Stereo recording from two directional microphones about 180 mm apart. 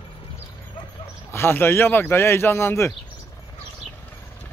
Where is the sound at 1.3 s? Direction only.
15° left (ahead or behind).